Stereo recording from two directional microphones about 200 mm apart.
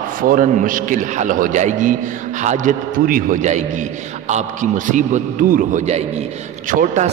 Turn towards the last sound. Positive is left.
turn(degrees=-40)  # may be behind; listen again after turning